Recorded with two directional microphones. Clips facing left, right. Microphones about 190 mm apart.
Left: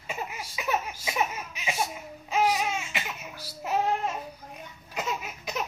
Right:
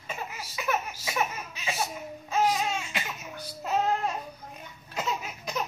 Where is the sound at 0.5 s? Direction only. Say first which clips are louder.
Even; 20° left (ahead or behind).